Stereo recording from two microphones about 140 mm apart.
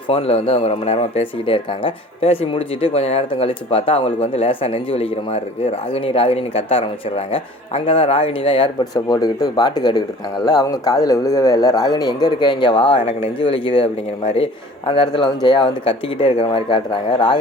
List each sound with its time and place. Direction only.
0.1 s a man's voice: 45° left (ahead or behind)